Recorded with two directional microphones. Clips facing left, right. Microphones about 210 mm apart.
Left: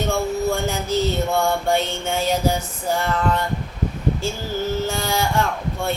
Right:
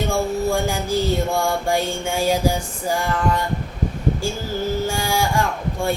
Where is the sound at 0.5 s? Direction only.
10° right (ahead or behind).